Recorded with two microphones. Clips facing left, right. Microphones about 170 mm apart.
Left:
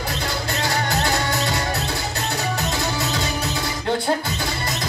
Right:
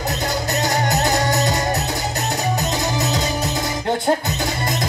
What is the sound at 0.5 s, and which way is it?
Music, 40° right (ahead or behind).